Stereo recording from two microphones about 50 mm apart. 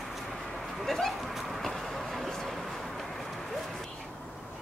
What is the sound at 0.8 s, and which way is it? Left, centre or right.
Vehicle, centre.